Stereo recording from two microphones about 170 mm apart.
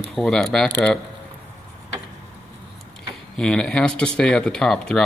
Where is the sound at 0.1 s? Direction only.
5° left (ahead or behind).